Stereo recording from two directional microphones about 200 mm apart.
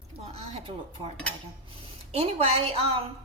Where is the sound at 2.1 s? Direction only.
30° right (ahead or behind).